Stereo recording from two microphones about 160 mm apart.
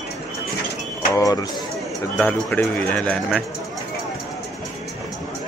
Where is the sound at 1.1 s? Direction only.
20° left (ahead or behind).